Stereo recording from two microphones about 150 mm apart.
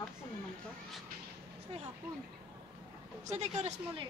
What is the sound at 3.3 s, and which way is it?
Speech, 50° right (ahead or behind).